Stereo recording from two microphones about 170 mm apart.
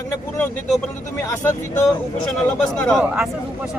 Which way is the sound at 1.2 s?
15° left (ahead or behind).